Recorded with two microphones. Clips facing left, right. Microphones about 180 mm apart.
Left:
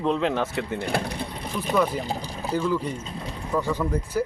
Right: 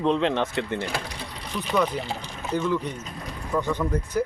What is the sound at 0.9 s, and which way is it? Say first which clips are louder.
Speech: left 5 dB; 55° left (ahead or behind).